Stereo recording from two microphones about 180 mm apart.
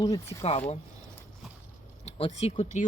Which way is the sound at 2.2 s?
35° left (ahead or behind).